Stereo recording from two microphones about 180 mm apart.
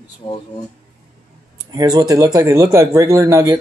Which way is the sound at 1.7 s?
20° right (ahead or behind).